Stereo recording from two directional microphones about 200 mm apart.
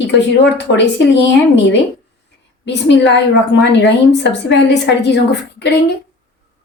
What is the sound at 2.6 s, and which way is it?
A woman's voice, 60° left (ahead or behind).